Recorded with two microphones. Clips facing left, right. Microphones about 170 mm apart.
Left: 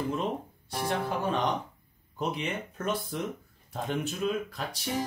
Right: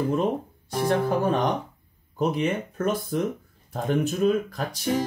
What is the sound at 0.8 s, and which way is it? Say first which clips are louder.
Speech: right 7 dB; 45° right (ahead or behind).